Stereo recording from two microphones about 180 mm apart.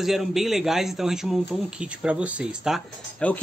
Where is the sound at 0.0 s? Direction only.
Centre (ahead or behind).